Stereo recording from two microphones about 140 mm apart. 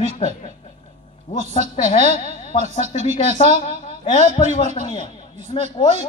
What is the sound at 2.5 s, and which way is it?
Speech, 55° left (ahead or behind).